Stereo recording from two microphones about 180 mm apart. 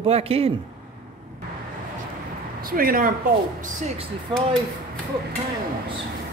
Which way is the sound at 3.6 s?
40° right (ahead or behind).